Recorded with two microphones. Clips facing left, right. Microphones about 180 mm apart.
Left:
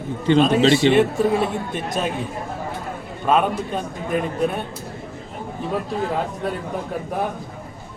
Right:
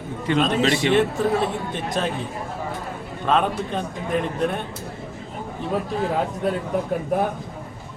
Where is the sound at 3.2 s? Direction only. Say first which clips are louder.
Left 2 dB; 10° left (ahead or behind).